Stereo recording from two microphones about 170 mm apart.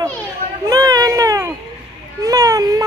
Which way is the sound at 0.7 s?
20° right (ahead or behind).